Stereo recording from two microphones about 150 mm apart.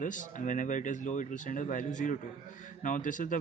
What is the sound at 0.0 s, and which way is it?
Speech, 60° left (ahead or behind).